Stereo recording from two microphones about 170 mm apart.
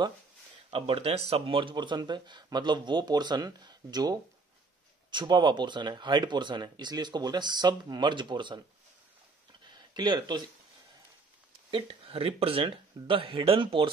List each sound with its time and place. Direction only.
0.7 s speech: 35° right (ahead or behind)
9.7 s a sound: 25° right (ahead or behind)
11.7 s speech: 30° right (ahead or behind)